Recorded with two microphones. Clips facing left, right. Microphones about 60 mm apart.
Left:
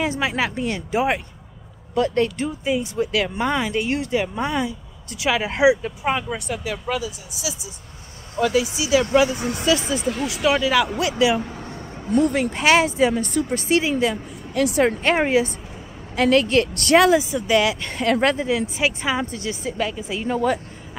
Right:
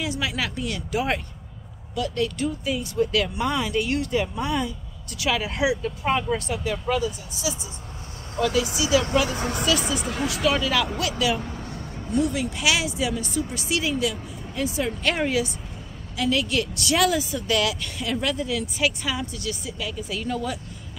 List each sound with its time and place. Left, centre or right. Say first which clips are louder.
0.0 s speech: left 5 dB; left
2.4 s speech: left 3 dB; left
6.1 s speech: right 1 dB; centre
8.6 s speech: left 2 dB; left
11.4 s vehicle: left 1 dB; centre
12.1 s speech: left 5 dB; left
14.5 s speech: left 8 dB; left
15.0 s speech: left 5 dB; left
16.2 s speech: left 7 dB; left
17.0 s speech: left 6 dB; left